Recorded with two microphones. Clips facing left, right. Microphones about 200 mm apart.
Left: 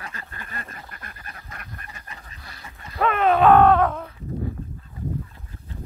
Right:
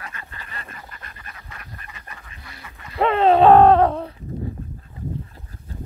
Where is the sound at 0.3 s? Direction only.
45° left (ahead or behind).